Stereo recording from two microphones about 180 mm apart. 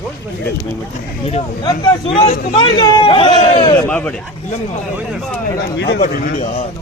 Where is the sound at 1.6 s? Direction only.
30° left (ahead or behind).